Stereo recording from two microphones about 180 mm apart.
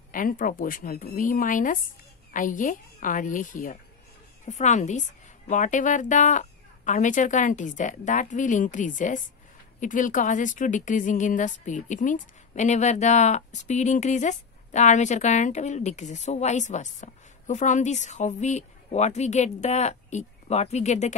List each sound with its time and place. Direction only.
0.1 s a woman's voice: 50° left (ahead or behind)